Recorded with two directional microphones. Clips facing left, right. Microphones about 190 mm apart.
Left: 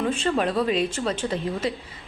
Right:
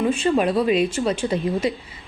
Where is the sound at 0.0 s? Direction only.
10° right (ahead or behind).